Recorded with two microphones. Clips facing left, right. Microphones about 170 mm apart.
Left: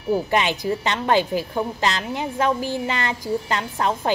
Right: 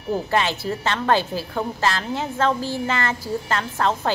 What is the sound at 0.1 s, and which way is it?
A woman's voice, 15° left (ahead or behind).